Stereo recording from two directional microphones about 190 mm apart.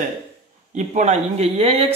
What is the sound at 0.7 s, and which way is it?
Speech, 40° right (ahead or behind).